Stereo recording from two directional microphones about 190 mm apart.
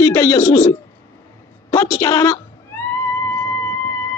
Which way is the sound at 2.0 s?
15° left (ahead or behind).